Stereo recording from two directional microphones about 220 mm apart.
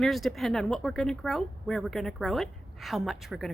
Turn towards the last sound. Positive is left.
turn(degrees=0)  # may be behind; listen again after turning